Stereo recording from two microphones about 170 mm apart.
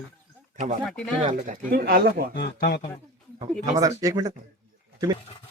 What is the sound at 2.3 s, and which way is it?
Speech, 70° left (ahead or behind).